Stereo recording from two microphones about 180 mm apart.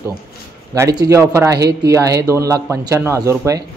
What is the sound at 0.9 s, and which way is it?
Speech, 20° right (ahead or behind).